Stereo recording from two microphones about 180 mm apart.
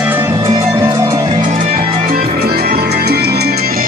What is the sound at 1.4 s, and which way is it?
Music, 50° right (ahead or behind).